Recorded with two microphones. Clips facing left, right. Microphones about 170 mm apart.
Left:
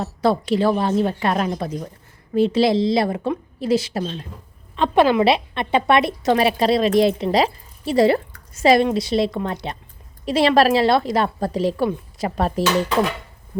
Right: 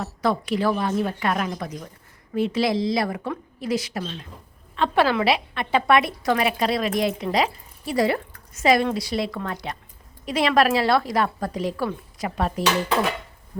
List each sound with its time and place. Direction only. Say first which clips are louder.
0.0 s a woman's voice: left 4 dB; 30° left (ahead or behind)
4.8 s a woman's voice: left 5 dB; 20° left (ahead or behind); by 12.6 s 35° left (ahead or behind)